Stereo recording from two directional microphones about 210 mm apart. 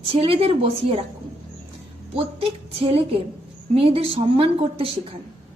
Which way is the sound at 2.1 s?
25° right (ahead or behind).